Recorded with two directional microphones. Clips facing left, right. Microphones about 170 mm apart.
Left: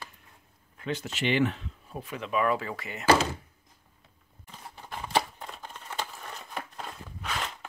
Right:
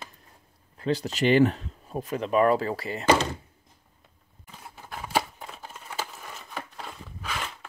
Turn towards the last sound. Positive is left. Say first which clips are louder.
# even
turn(degrees=0)  # may be behind; listen again after turning